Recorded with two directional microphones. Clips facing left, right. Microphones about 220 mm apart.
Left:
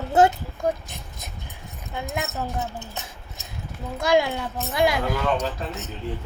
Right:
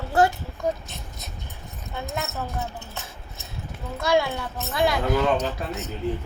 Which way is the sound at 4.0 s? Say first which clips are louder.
Left 2 dB; 15° left (ahead or behind).